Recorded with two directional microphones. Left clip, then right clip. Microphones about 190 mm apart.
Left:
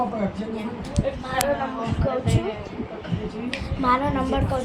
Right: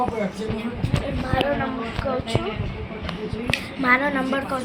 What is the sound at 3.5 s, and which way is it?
Speech, 15° left (ahead or behind).